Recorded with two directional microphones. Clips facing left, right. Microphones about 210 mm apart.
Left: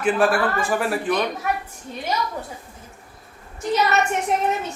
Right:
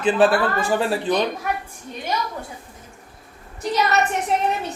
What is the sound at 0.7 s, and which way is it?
Speech, 25° right (ahead or behind).